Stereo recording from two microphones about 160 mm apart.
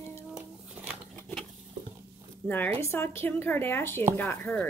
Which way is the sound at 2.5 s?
15° left (ahead or behind).